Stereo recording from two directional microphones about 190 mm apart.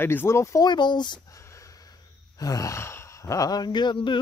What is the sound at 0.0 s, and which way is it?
Speech, 10° left (ahead or behind).